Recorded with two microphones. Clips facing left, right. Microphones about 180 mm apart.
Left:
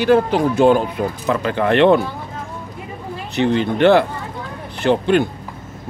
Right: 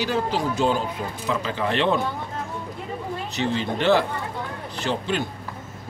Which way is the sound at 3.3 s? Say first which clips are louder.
Left 9 dB; 60° left (ahead or behind).